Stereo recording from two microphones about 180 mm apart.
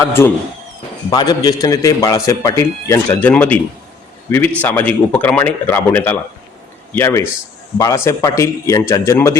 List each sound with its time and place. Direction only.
0.0 s a man's voice: 15° left (ahead or behind)